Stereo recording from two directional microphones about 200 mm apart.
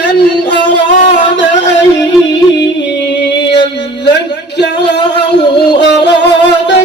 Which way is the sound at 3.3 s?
60° left (ahead or behind).